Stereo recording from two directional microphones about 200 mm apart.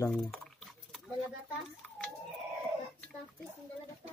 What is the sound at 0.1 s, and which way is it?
Speech, centre (ahead or behind).